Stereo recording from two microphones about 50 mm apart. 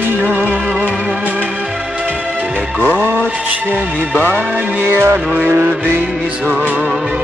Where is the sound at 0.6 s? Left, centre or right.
Right.